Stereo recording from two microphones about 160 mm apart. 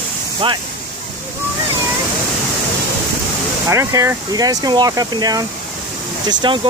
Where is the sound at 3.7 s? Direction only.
20° right (ahead or behind).